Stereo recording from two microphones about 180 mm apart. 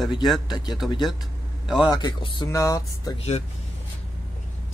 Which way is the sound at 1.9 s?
25° left (ahead or behind).